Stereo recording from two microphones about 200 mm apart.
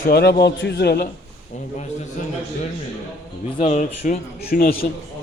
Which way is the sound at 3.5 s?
35° left (ahead or behind).